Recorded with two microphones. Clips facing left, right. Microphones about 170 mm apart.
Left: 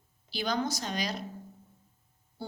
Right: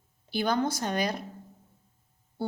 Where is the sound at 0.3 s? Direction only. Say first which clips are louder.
Right 4 dB; 55° right (ahead or behind).